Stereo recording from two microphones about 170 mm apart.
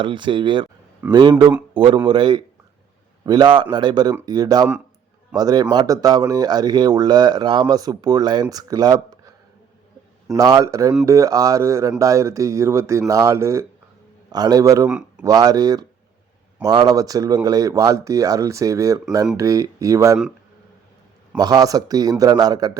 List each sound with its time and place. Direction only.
0.0 s speech: 30° right (ahead or behind)
10.3 s speech: 20° right (ahead or behind)
21.3 s speech: 25° right (ahead or behind)